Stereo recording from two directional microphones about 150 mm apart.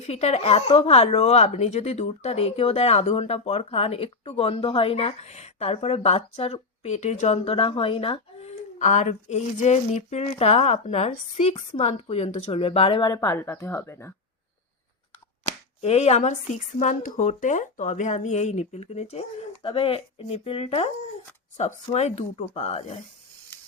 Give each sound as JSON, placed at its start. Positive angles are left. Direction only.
{"t": 0.0, "sound": "speech", "side_deg": 45}
{"t": 15.8, "sound": "speech", "side_deg": 45}
{"t": 21.9, "sound": "speech", "side_deg": 50}